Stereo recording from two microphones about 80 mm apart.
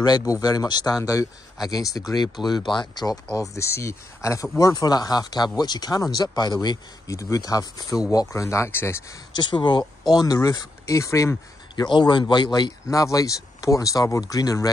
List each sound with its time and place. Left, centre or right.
0.2 s speech: left
1.0 s speech: left
2.6 s speech: left
3.3 s speech: left
7.1 s speech: left
9.3 s speech: left
11.0 s speech: left
11.7 s speech: left
12.9 s speech: left